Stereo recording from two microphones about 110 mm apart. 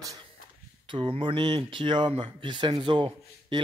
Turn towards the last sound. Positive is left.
turn(degrees=-45)  # may be behind; listen again after turning